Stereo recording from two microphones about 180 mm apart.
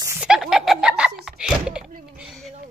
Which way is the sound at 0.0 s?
15° right (ahead or behind).